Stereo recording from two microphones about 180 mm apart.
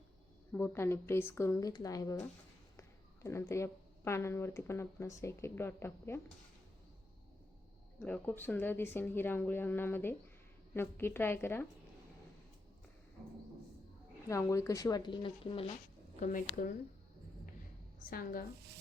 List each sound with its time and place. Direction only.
0.5 s speech: 15° left (ahead or behind)
3.2 s speech: 15° left (ahead or behind)
8.0 s speech: 10° left (ahead or behind)
14.3 s speech: 15° left (ahead or behind)
16.2 s speech: 45° left (ahead or behind)
18.1 s speech: 50° left (ahead or behind)